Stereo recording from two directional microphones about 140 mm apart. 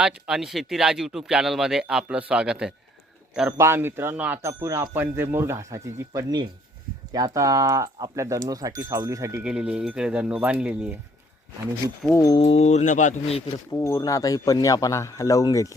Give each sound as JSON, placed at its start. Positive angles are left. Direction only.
{"t": 0.0, "sound": "speech", "side_deg": -5}
{"t": 3.6, "sound": "speech", "side_deg": -15}
{"t": 4.6, "sound": "speech", "side_deg": -25}
{"t": 9.4, "sound": "speech", "side_deg": -5}
{"t": 12.1, "sound": "a man's voice", "side_deg": 25}
{"t": 12.4, "sound": "speech", "side_deg": 45}
{"t": 13.7, "sound": "a man's voice", "side_deg": 25}